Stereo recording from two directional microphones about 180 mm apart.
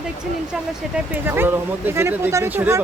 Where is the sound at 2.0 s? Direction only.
15° right (ahead or behind).